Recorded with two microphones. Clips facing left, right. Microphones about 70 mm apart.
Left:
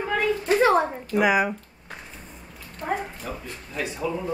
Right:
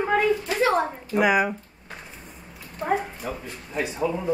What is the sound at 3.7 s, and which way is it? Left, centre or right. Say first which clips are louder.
Speech: right 3 dB; right.